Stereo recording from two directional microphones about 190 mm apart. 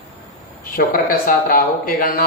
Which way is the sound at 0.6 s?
50° left (ahead or behind).